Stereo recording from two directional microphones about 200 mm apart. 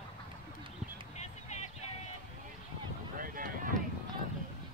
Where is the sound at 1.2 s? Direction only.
35° left (ahead or behind).